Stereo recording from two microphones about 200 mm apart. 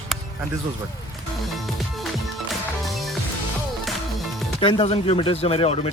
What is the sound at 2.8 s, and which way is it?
Music, centre (ahead or behind).